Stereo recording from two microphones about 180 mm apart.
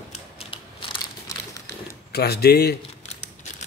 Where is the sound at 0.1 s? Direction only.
30° left (ahead or behind).